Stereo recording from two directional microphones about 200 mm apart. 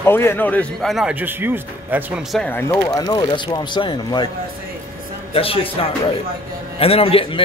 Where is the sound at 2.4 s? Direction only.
10° left (ahead or behind).